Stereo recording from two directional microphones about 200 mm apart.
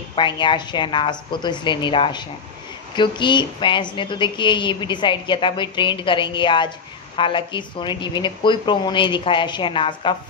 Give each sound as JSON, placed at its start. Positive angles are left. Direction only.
{"t": 0.1, "sound": "speech", "side_deg": 25}